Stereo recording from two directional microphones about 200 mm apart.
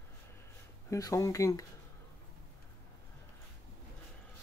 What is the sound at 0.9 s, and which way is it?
Speech, 15° left (ahead or behind).